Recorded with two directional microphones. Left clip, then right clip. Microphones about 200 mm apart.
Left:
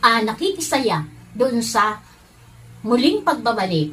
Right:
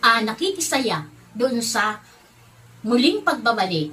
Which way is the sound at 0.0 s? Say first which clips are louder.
Left 1 dB; centre (ahead or behind).